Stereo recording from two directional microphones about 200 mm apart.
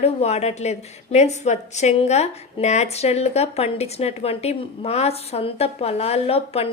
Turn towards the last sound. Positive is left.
turn(degrees=30)  # may be behind; listen again after turning